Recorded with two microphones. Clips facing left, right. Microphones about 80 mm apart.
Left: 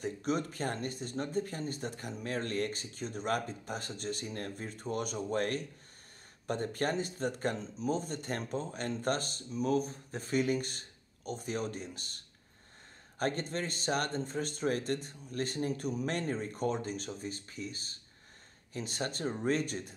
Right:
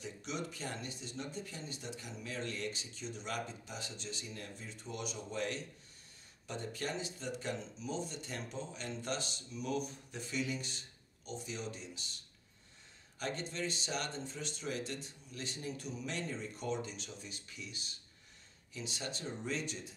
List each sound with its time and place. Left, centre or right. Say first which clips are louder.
0.0 s speech: left 8 dB; left
13.2 s speech: left 5 dB; left